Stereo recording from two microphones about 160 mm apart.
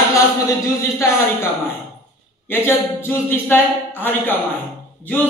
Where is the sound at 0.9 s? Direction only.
15° left (ahead or behind).